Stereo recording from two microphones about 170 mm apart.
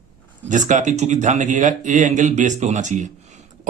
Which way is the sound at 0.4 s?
45° right (ahead or behind).